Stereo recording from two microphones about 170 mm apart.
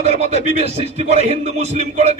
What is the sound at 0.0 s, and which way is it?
Speech, 40° right (ahead or behind).